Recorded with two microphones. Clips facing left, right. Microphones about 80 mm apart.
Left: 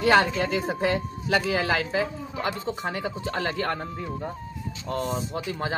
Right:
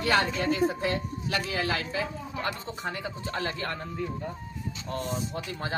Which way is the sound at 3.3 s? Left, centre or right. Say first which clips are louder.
Left 4 dB; left.